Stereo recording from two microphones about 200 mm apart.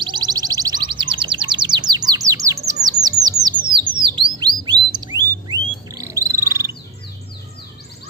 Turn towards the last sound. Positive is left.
turn(degrees=-15)  # may be behind; listen again after turning